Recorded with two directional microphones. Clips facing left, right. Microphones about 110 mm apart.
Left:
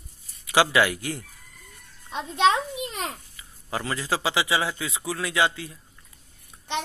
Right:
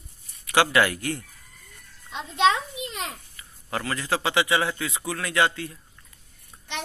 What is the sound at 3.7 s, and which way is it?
A man's voice, 20° left (ahead or behind).